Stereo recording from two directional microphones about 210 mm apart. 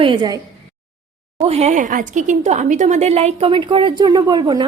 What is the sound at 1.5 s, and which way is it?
Speech, 30° right (ahead or behind).